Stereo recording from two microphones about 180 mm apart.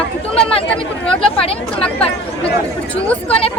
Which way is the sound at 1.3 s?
30° left (ahead or behind).